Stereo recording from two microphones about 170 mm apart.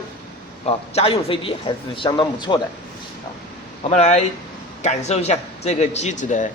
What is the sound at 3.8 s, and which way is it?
Speech, 40° left (ahead or behind).